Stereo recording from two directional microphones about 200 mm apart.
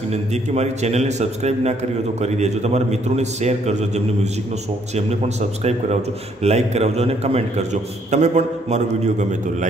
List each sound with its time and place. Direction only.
0.1 s a man's voice: 35° right (ahead or behind)
5.6 s a man's voice: 35° right (ahead or behind)